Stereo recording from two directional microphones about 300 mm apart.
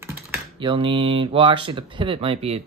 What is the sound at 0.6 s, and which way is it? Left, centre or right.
Speech, centre.